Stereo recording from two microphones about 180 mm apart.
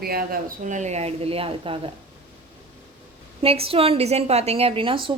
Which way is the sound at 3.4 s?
30° right (ahead or behind).